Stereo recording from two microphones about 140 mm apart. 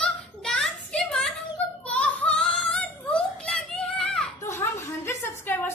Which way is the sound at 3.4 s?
5° left (ahead or behind).